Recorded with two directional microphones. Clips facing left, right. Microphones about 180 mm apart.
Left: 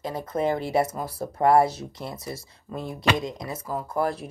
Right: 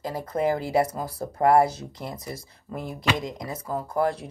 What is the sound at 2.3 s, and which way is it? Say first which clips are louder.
Speech: even; 20° left (ahead or behind).